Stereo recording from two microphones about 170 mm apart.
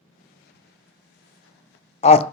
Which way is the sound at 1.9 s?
35° left (ahead or behind).